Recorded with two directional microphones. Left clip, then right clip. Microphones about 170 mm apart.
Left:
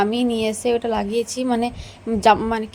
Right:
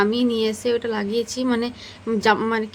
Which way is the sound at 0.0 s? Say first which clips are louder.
Even; 15° left (ahead or behind).